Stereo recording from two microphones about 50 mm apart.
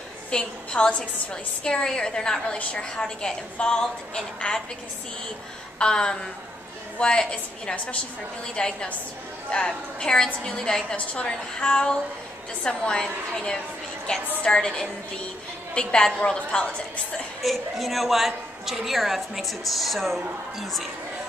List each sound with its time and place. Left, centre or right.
0.3 s a woman's voice: centre
5.8 s a woman's voice: centre
17.4 s a woman's voice: centre